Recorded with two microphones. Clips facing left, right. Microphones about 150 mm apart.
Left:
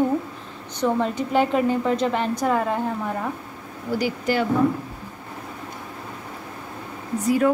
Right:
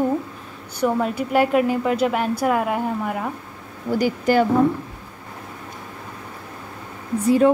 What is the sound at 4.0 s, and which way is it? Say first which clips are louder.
Speech: right 5 dB; 50° right (ahead or behind).